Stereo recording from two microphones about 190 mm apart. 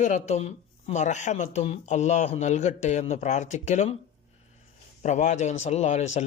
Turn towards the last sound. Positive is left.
turn(degrees=35)  # may be behind; listen again after turning